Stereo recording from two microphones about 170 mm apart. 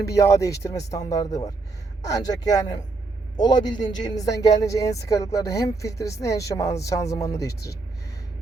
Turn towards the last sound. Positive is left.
turn(degrees=20)  # may be behind; listen again after turning